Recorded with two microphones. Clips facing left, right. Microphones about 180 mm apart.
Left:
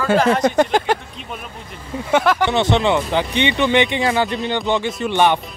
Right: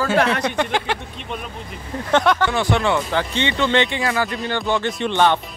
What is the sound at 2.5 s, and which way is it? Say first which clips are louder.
Speech: left 3 dB; 20° left (ahead or behind).